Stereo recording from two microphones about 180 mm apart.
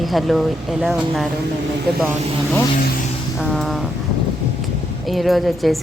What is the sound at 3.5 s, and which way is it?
Speech, centre (ahead or behind).